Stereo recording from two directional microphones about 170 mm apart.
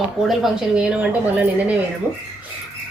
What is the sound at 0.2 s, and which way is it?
A woman's voice, centre (ahead or behind).